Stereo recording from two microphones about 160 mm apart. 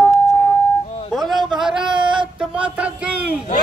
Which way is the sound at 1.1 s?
Centre (ahead or behind).